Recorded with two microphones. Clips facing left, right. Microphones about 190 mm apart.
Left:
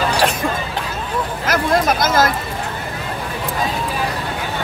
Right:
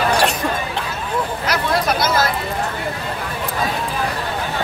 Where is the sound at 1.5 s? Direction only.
45° left (ahead or behind).